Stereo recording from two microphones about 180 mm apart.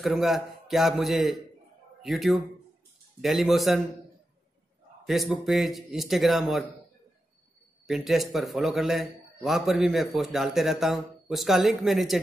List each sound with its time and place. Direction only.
0.0 s a man's voice: centre (ahead or behind)
5.0 s a man's voice: centre (ahead or behind)
7.8 s a man's voice: centre (ahead or behind)